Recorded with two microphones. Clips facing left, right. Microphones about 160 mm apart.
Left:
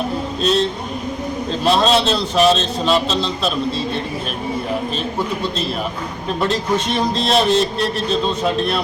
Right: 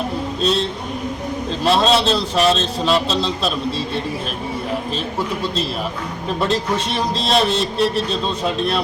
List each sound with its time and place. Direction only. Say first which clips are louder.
0.4 s a man's voice: left 3 dB; centre (ahead or behind)
6.8 s a man's voice: left 2 dB; centre (ahead or behind)